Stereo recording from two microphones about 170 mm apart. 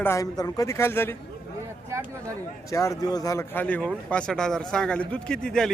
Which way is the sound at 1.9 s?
15° right (ahead or behind).